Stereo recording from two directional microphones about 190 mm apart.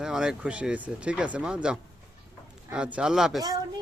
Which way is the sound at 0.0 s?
5° right (ahead or behind).